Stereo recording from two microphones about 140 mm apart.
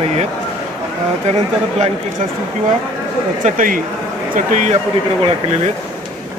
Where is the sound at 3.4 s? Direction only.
75° right (ahead or behind).